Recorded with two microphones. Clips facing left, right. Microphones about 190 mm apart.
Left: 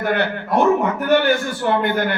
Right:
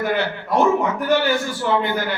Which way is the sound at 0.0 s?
60° left (ahead or behind).